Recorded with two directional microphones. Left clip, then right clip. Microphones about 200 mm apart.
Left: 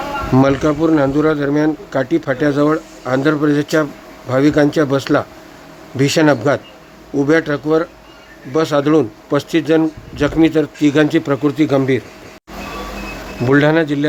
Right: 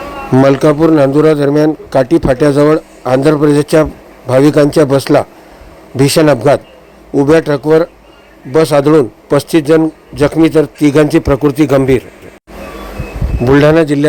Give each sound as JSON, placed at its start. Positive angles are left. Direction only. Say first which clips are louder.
{"t": 0.3, "sound": "a man's voice", "louder": "right 7 dB", "side_deg": -20}
{"t": 13.5, "sound": "a man's voice", "louder": "right 5 dB", "side_deg": -20}